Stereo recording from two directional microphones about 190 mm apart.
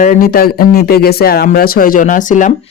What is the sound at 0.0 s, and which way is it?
Speech, 50° left (ahead or behind).